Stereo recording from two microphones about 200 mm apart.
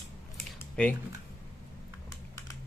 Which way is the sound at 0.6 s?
10° left (ahead or behind).